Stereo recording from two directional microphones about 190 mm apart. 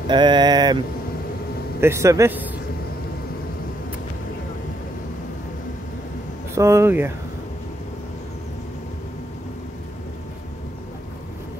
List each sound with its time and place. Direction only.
0.1 s speech: 25° right (ahead or behind)
1.8 s a man's voice: 15° right (ahead or behind)
6.5 s speech: 15° right (ahead or behind)